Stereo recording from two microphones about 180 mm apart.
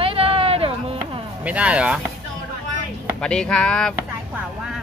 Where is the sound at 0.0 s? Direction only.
30° right (ahead or behind).